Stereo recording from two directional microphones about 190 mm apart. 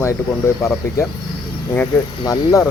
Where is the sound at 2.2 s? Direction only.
20° left (ahead or behind).